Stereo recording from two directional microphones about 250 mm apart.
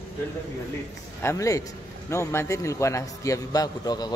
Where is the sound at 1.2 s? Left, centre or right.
Centre.